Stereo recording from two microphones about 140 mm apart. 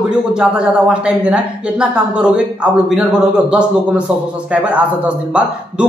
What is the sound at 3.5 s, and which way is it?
Speech, 10° right (ahead or behind).